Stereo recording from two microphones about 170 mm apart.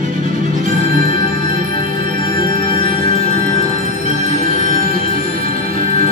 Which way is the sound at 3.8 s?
40° left (ahead or behind).